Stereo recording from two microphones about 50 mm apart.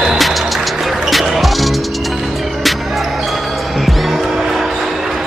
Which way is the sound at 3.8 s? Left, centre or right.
Centre.